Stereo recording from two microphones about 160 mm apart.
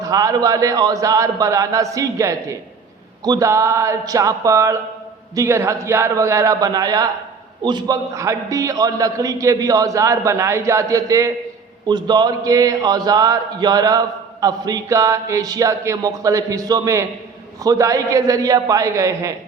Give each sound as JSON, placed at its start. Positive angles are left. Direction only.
{"t": 0.0, "sound": "a man's voice", "side_deg": -20}